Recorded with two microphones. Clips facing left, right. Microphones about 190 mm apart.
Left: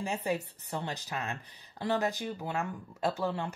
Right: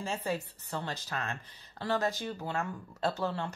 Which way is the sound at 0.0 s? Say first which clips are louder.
Left 2 dB; 15° left (ahead or behind).